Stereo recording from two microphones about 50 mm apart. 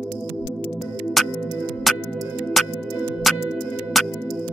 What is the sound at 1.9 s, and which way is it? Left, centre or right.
Music, centre.